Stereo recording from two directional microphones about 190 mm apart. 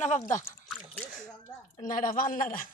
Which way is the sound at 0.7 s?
5° left (ahead or behind).